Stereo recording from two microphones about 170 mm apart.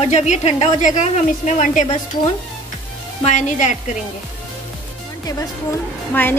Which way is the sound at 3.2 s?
45° left (ahead or behind).